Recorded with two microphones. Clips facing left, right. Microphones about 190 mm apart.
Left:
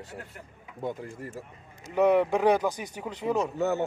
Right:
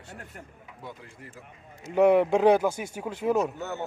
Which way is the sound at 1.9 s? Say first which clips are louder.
Right 2 dB; 15° right (ahead or behind).